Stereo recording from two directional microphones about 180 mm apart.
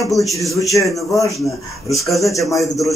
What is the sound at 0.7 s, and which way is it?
Speech, 15° left (ahead or behind).